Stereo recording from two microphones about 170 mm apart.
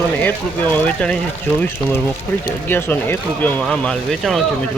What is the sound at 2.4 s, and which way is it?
Speech, 15° left (ahead or behind).